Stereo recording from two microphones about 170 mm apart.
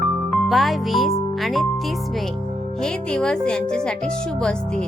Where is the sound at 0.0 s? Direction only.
Centre (ahead or behind).